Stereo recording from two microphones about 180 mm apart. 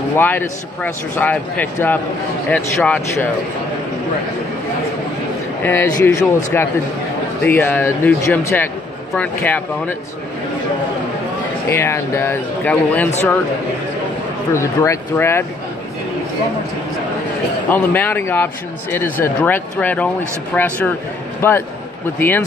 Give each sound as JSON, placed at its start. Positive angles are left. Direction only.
{"t": 0.2, "sound": "speech", "side_deg": 10}
{"t": 5.6, "sound": "speech", "side_deg": 15}
{"t": 11.7, "sound": "speech", "side_deg": 15}
{"t": 14.5, "sound": "speech", "side_deg": 15}
{"t": 17.6, "sound": "a man's voice", "side_deg": 10}